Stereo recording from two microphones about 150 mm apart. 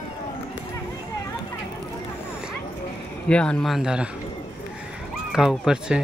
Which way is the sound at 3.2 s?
5° left (ahead or behind).